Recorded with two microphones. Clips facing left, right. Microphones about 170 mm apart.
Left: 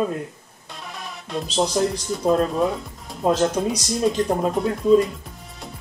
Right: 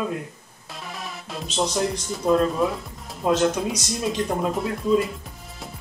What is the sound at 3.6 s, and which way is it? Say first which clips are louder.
Speech: left 4 dB; 45° left (ahead or behind).